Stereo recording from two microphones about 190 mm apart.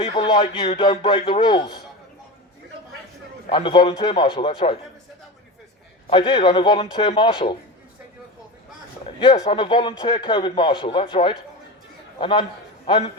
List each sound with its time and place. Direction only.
0.0 s a man's voice: 25° left (ahead or behind)
3.5 s a man's voice: 25° left (ahead or behind)
6.1 s a man's voice: 25° left (ahead or behind)
9.0 s a man's voice: 25° left (ahead or behind)